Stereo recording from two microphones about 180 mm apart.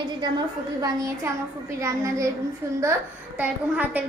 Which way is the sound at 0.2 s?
20° right (ahead or behind).